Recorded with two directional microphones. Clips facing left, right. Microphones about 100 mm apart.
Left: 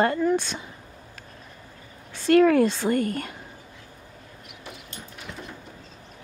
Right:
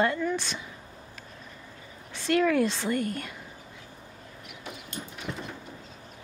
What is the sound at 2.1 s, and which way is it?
A woman's voice, 45° left (ahead or behind).